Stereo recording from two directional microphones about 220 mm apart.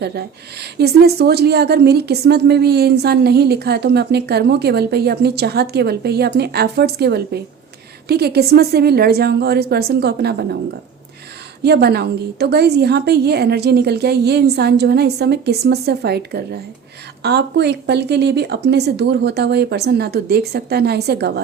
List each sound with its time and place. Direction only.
0.0 s speech: 50° right (ahead or behind)
11.6 s speech: 45° right (ahead or behind)